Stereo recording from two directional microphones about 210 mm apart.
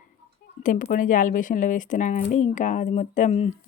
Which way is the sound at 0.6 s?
40° left (ahead or behind).